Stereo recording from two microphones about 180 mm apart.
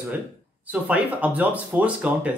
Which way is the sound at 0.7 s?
10° right (ahead or behind).